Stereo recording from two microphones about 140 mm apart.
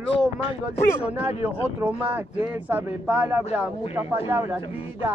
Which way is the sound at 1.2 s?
15° right (ahead or behind).